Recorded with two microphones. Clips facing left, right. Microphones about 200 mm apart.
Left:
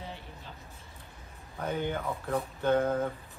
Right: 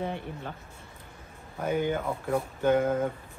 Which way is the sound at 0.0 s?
60° right (ahead or behind).